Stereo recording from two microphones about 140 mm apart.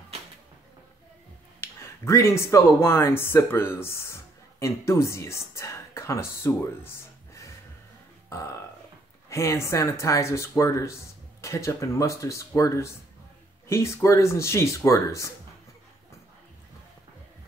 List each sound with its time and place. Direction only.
1.6 s speech: 20° left (ahead or behind)
8.3 s burping: 20° left (ahead or behind)
9.3 s speech: 20° left (ahead or behind)